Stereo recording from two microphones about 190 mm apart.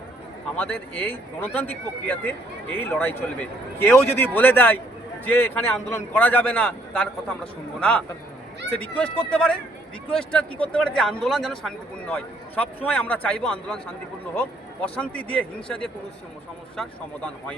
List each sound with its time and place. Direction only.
0.5 s a man's voice: 5° left (ahead or behind)
14.9 s a man's voice: 5° left (ahead or behind)